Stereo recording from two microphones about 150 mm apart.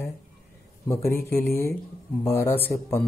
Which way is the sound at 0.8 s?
20° left (ahead or behind).